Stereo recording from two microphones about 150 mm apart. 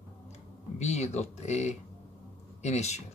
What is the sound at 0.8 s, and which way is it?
Speech, 50° left (ahead or behind).